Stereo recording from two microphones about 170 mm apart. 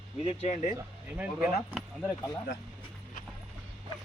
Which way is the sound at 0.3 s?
40° left (ahead or behind).